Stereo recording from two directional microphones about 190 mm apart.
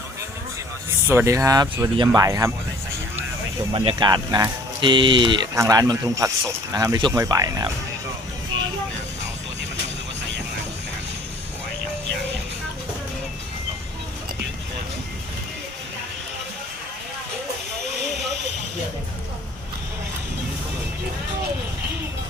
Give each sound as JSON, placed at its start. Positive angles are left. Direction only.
{"t": 1.1, "sound": "speech", "side_deg": -15}
{"t": 3.7, "sound": "speech", "side_deg": -25}